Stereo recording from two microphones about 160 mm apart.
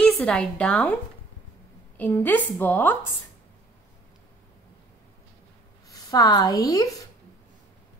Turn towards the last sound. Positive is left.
turn(degrees=20)  # may be behind; listen again after turning